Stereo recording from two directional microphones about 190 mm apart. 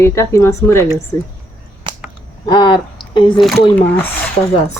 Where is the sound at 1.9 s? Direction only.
25° right (ahead or behind).